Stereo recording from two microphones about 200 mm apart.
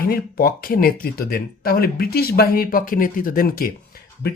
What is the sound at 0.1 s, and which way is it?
Speech, 45° left (ahead or behind).